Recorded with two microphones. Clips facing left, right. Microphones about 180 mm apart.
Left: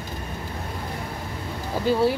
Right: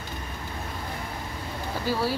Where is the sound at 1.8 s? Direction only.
20° left (ahead or behind).